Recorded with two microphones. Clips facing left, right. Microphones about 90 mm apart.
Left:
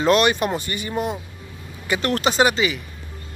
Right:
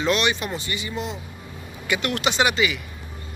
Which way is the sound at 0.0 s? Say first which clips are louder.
Left 5 dB; 45° left (ahead or behind).